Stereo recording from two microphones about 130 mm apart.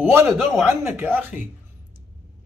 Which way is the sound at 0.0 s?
20° right (ahead or behind).